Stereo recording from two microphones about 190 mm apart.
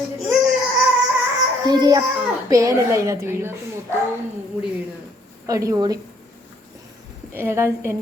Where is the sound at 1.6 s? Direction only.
20° right (ahead or behind).